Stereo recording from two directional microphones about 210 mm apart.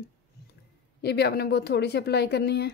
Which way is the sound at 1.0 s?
50° left (ahead or behind).